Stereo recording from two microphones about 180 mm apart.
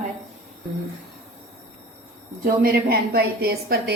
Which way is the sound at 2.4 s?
55° right (ahead or behind).